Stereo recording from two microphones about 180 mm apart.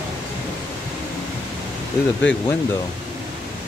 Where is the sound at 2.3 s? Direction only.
85° left.